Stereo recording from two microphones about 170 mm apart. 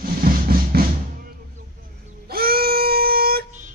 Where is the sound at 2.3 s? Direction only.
65° right (ahead or behind).